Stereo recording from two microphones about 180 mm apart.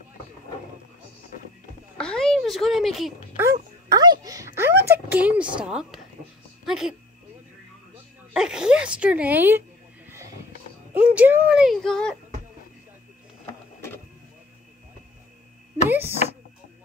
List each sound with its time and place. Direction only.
2.0 s a sound: 5° left (ahead or behind)
3.9 s a child's voice: 20° right (ahead or behind); by 7.0 s 5° right (ahead or behind)
8.3 s speech: 5° right (ahead or behind)
10.0 s vehicle: 15° right (ahead or behind)
10.9 s speech: 10° right (ahead or behind)
15.9 s a sound: 10° right (ahead or behind)